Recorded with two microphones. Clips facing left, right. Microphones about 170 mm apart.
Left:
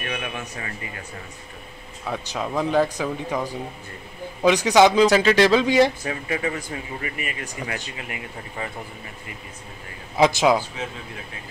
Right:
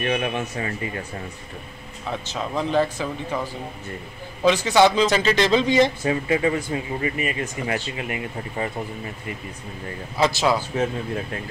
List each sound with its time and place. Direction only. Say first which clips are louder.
0.0 s speech: right 7 dB; 30° right (ahead or behind)
2.0 s speech: left 1 dB; 10° left (ahead or behind)
4.5 s speech: left 1 dB; 15° left (ahead or behind)
6.0 s speech: right 6 dB; 25° right (ahead or behind)
10.1 s speech: left 3 dB; 15° left (ahead or behind)